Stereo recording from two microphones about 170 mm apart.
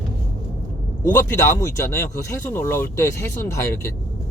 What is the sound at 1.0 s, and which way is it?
Speech, 20° left (ahead or behind).